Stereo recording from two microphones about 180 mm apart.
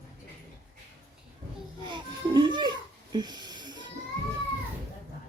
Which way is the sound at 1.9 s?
25° right (ahead or behind).